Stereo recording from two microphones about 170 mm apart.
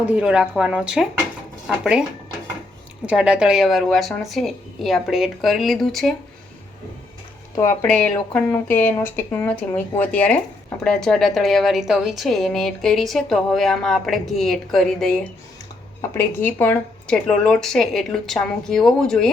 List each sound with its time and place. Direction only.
0.0 s a woman's voice: 5° right (ahead or behind)
3.1 s a woman's voice: 5° right (ahead or behind)
7.8 s a woman's voice: 5° left (ahead or behind)
16.0 s a woman's voice: 15° left (ahead or behind)